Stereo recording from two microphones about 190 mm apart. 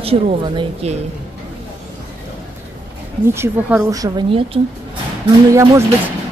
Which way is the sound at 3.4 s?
10° right (ahead or behind).